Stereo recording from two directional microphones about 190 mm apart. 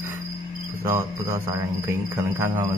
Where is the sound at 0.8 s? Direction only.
15° right (ahead or behind).